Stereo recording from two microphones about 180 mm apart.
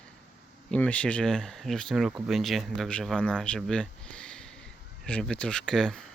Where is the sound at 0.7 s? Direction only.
5° left (ahead or behind).